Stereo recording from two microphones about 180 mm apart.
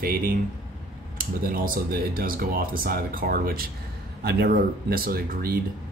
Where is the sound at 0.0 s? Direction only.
50° right (ahead or behind).